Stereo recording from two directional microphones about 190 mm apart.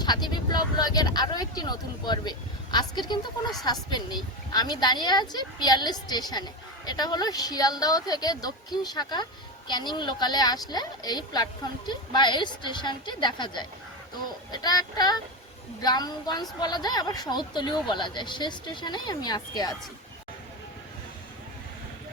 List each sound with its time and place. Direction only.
0.0 s speech: 20° left (ahead or behind)
3.9 s speech: 20° left (ahead or behind)